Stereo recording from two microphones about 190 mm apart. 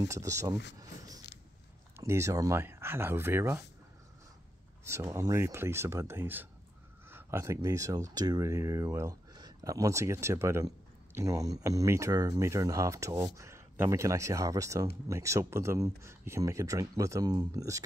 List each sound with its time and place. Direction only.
0.0 s speech: 15° right (ahead or behind)
2.0 s speech: 15° right (ahead or behind)
4.8 s speech: 15° right (ahead or behind)